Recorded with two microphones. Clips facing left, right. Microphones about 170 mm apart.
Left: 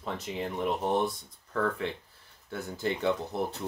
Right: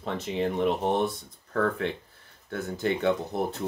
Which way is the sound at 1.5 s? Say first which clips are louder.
Right 3 dB; 55° right (ahead or behind).